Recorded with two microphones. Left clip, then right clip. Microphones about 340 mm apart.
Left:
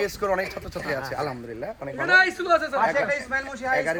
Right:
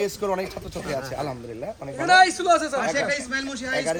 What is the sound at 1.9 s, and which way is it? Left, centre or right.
Speech, centre.